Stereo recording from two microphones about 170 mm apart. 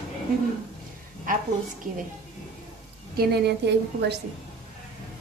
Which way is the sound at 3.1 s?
70° right (ahead or behind).